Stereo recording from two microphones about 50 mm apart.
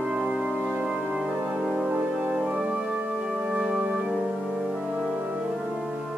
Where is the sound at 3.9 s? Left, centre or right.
Right.